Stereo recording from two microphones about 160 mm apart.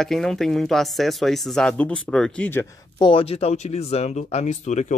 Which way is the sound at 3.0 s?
35° left (ahead or behind).